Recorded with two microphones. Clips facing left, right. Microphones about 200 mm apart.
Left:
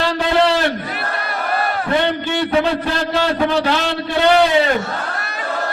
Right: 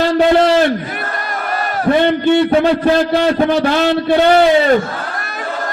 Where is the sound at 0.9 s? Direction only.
50° right (ahead or behind).